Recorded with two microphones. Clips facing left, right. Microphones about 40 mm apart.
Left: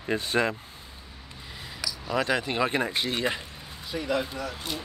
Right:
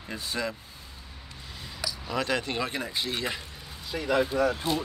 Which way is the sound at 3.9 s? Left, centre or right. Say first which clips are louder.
Right 4 dB; right.